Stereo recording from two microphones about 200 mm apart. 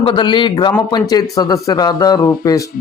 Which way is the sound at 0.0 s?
25° left (ahead or behind).